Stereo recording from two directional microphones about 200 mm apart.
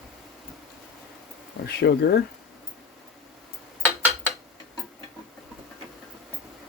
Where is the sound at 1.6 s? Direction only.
55° left (ahead or behind).